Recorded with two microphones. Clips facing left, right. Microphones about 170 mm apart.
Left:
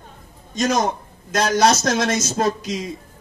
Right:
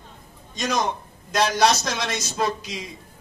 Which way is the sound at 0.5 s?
45° left (ahead or behind).